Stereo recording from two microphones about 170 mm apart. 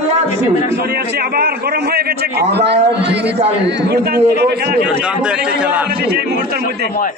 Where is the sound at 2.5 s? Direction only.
80° right.